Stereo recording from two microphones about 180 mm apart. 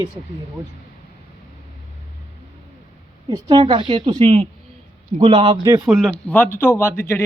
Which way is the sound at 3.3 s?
25° right (ahead or behind).